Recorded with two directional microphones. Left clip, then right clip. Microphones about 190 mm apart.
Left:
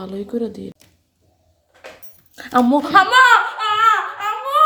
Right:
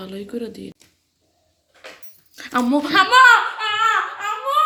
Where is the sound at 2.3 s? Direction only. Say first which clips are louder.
Left 4 dB; 25° left (ahead or behind).